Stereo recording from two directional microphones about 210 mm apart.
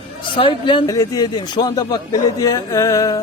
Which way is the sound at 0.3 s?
25° left (ahead or behind).